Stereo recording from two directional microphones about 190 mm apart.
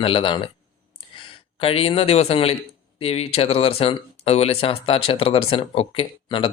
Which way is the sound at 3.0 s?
30° left (ahead or behind).